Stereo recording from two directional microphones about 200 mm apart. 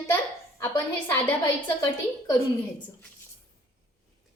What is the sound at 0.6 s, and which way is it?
A woman's voice, 15° left (ahead or behind).